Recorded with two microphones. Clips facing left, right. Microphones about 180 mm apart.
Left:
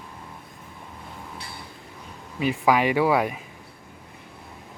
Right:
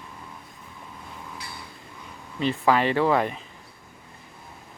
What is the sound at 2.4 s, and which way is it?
A man's voice, 10° left (ahead or behind).